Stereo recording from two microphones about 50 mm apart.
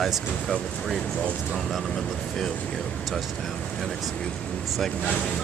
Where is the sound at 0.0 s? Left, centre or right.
Centre.